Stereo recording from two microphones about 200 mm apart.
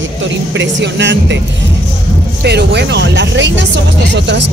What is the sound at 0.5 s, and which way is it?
Speech, 60° right (ahead or behind).